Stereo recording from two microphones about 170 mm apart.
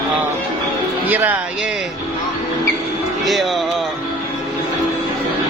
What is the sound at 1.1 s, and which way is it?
Speech, 10° right (ahead or behind).